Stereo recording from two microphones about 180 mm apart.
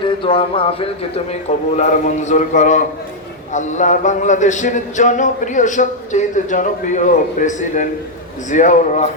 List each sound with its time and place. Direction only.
0.0 s speech: 30° left (ahead or behind)